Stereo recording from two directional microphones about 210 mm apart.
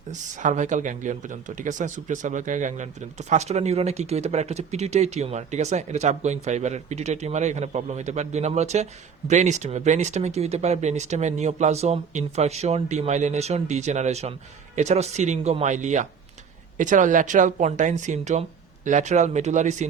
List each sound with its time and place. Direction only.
0.1 s speech: 35° right (ahead or behind)